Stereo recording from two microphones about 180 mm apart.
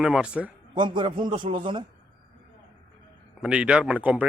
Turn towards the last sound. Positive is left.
turn(degrees=-10)  # may be behind; listen again after turning